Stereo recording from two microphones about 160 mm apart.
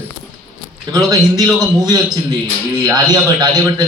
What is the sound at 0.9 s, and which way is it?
A man's voice, 25° right (ahead or behind).